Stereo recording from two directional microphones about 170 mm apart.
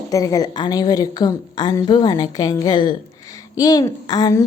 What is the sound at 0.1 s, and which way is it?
A woman's voice, 20° left (ahead or behind).